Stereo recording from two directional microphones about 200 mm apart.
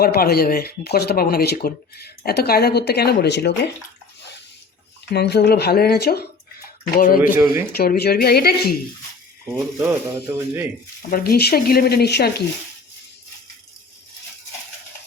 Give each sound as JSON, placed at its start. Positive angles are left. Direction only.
{"t": 0.0, "sound": "speech", "side_deg": 50}
{"t": 5.1, "sound": "speech", "side_deg": 55}
{"t": 7.2, "sound": "speech", "side_deg": -10}
{"t": 7.8, "sound": "speech", "side_deg": 55}
{"t": 9.5, "sound": "speech", "side_deg": -10}
{"t": 11.1, "sound": "speech", "side_deg": 50}